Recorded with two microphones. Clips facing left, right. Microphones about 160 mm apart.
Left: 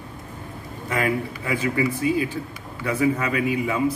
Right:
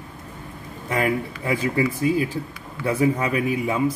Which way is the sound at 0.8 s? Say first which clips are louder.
Right 1 dB; 25° right (ahead or behind).